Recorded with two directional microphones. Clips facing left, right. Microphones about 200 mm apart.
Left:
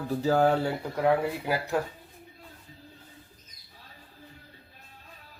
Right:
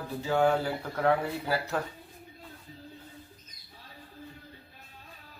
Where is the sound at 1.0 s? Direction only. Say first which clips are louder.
Left 2 dB; 10° left (ahead or behind).